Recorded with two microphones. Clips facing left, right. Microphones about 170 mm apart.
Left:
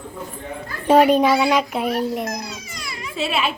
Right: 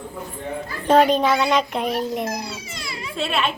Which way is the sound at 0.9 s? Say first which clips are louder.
Left 2 dB; 10° left (ahead or behind).